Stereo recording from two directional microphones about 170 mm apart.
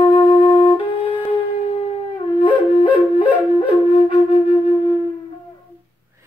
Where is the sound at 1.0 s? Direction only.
10° left (ahead or behind).